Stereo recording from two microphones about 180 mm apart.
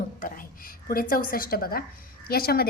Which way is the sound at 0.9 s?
55° left (ahead or behind).